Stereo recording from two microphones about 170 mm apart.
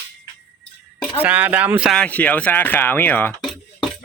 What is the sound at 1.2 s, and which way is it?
Speech, 10° right (ahead or behind).